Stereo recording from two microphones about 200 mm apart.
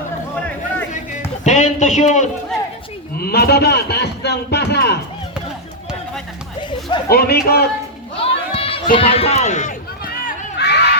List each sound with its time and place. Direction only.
1.5 s a man's voice: 35° left (ahead or behind)
3.2 s a man's voice: 50° left (ahead or behind)
7.1 s a man's voice: 50° left (ahead or behind)
8.2 s run: 30° left (ahead or behind); by 10.9 s 60° left (ahead or behind)